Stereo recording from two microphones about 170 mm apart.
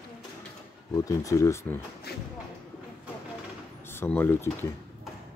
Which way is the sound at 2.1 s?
70° left (ahead or behind).